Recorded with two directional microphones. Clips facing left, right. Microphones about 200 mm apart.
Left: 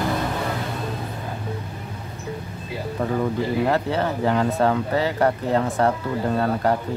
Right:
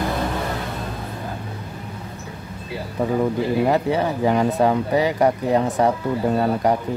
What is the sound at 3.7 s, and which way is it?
Speech, 15° right (ahead or behind).